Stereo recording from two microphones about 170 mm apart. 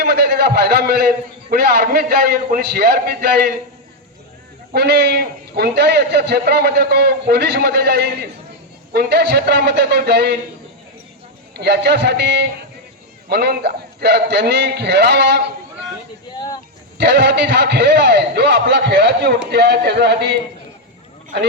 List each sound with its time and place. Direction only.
0.0 s a man's voice: 70° right (ahead or behind)
4.7 s a man's voice: 70° right (ahead or behind)
11.5 s a man's voice: 80° right
13.2 s a man's voice: 70° right (ahead or behind)
16.3 s vehicle: 25° left (ahead or behind)
17.0 s a man's voice: 85° right